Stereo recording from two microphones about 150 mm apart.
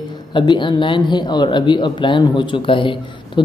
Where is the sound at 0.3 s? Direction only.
35° left (ahead or behind).